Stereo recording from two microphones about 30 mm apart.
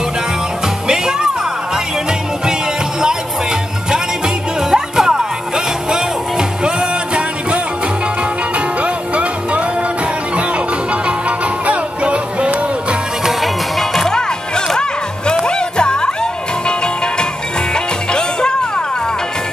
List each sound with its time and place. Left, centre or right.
4.6 s music: centre
8.8 s music: right
11.1 s music: right
13.4 s music: centre
15.4 s music: left